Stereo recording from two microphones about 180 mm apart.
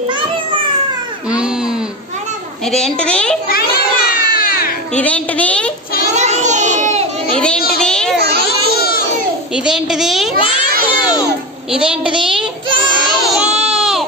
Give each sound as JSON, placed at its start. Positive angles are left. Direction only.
{"t": 2.7, "sound": "a child's voice", "side_deg": 5}
{"t": 3.4, "sound": "music", "side_deg": 55}
{"t": 4.9, "sound": "a woman's voice", "side_deg": 5}
{"t": 6.1, "sound": "a sound", "side_deg": -40}
{"t": 7.3, "sound": "a child's voice", "side_deg": 5}
{"t": 8.5, "sound": "baby cry", "side_deg": 60}
{"t": 9.7, "sound": "a child's voice", "side_deg": -5}
{"t": 10.9, "sound": "a child's voice", "side_deg": 25}
{"t": 11.7, "sound": "a child's voice", "side_deg": -5}
{"t": 13.3, "sound": "baby cry", "side_deg": -5}